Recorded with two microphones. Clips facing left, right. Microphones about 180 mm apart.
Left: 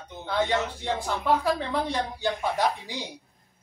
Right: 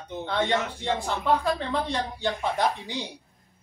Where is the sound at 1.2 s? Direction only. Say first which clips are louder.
Even; 10° left (ahead or behind).